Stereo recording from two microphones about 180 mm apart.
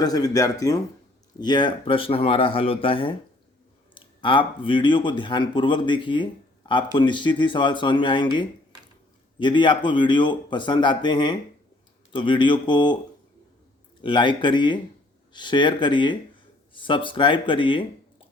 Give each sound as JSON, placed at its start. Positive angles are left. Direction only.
{"t": 0.0, "sound": "speech", "side_deg": 20}
{"t": 9.4, "sound": "speech", "side_deg": 25}
{"t": 14.0, "sound": "speech", "side_deg": 25}